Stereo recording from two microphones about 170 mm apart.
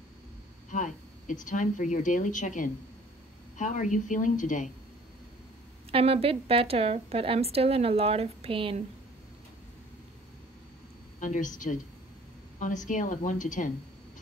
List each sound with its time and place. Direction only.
0.7 s speech: 45° left (ahead or behind)
5.9 s a woman's voice: 35° right (ahead or behind)
11.1 s speech: 50° left (ahead or behind)